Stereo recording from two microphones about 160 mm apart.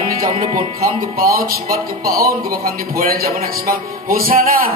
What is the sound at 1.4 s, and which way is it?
Speech, 65° right (ahead or behind).